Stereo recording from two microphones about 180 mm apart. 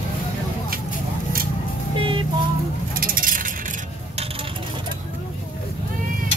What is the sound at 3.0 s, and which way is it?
Vehicle, 50° right (ahead or behind).